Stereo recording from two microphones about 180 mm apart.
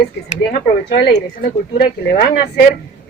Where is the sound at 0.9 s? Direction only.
65° left (ahead or behind).